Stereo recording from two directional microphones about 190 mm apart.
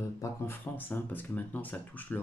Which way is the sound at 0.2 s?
10° left (ahead or behind).